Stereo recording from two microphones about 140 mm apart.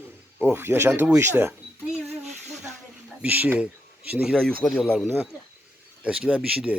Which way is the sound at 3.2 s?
10° right (ahead or behind).